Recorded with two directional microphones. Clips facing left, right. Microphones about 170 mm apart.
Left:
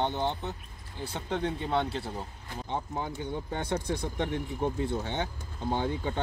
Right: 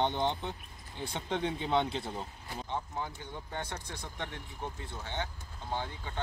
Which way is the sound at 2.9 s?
20° left (ahead or behind).